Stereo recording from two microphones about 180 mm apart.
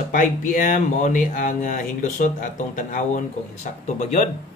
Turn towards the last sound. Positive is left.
turn(degrees=40)  # may be behind; listen again after turning